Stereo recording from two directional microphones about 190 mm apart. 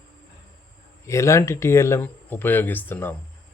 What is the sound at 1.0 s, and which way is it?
A man's voice, 15° left (ahead or behind).